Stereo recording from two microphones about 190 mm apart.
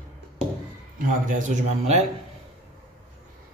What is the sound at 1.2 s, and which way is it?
Speech, 40° right (ahead or behind).